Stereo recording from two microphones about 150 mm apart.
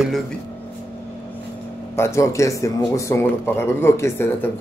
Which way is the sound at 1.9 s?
20° left (ahead or behind).